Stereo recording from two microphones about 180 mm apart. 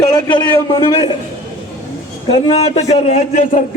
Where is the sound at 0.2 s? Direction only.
25° left (ahead or behind).